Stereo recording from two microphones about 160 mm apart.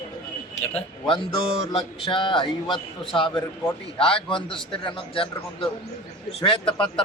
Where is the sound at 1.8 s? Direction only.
30° left (ahead or behind).